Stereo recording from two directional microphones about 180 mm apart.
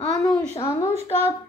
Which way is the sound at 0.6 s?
15° left (ahead or behind).